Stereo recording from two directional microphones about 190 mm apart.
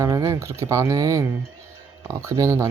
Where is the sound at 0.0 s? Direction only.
15° right (ahead or behind).